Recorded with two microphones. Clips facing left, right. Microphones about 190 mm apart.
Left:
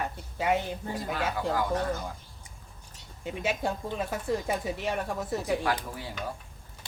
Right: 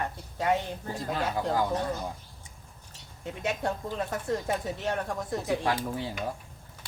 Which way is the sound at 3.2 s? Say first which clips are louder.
Left 1 dB; 5° left (ahead or behind).